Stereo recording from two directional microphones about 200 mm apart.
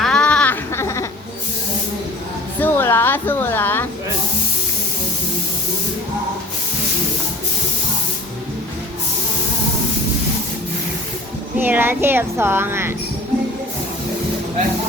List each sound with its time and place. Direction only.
0.0 s a sound: 5° left (ahead or behind)
2.6 s a woman's voice: 10° left (ahead or behind)
11.5 s speech: 10° right (ahead or behind)